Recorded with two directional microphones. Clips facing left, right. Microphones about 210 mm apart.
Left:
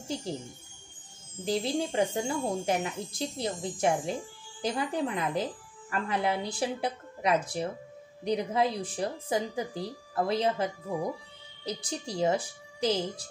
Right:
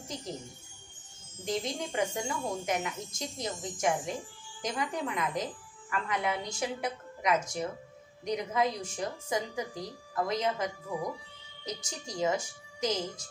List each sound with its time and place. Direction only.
0.1 s a woman's voice: 30° left (ahead or behind)
1.4 s a woman's voice: 30° left (ahead or behind)